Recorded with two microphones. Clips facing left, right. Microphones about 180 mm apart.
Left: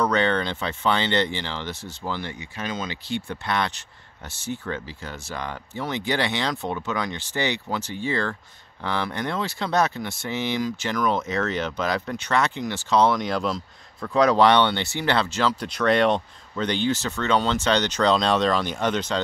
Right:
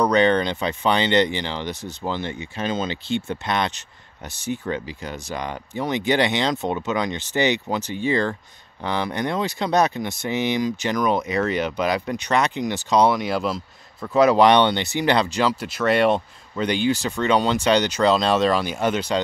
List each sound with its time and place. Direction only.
0.0 s speech: 15° right (ahead or behind)